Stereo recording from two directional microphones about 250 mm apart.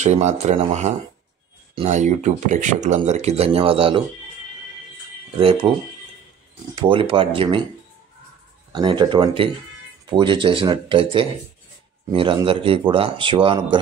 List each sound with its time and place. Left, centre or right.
0.0 s speech: right
5.4 s speech: right
6.7 s speech: right
8.7 s speech: centre